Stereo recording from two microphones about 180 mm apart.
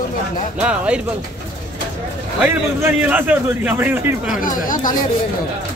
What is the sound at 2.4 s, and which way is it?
A man's voice, 10° right (ahead or behind).